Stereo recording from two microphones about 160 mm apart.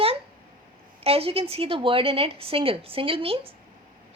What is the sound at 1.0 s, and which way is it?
A woman's voice, 35° right (ahead or behind).